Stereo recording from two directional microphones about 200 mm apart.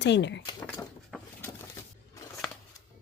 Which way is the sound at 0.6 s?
5° left (ahead or behind).